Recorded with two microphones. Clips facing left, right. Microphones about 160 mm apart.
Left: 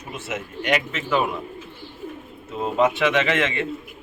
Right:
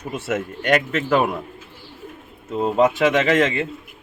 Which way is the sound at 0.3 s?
55° right (ahead or behind).